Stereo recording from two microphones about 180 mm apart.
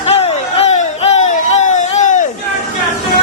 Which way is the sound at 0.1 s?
35° left (ahead or behind).